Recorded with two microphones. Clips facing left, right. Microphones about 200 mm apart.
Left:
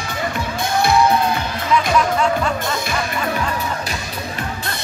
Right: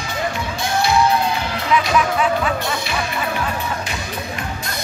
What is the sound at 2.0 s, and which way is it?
Music, 5° right (ahead or behind).